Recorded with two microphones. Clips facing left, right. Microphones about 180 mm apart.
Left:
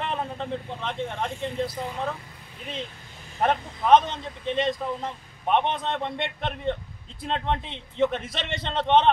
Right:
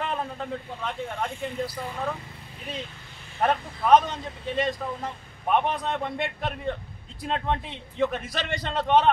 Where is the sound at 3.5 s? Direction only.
20° left (ahead or behind).